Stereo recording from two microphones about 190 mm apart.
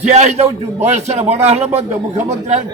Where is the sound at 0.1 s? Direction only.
35° right (ahead or behind).